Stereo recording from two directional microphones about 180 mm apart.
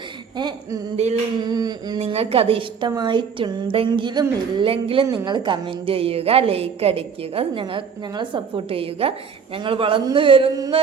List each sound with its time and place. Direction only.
0.3 s a woman's voice: 25° right (ahead or behind)
0.9 s a woman's voice: 35° right (ahead or behind)
1.4 s a sound: 20° right (ahead or behind)
2.0 s a woman's voice: 30° right (ahead or behind)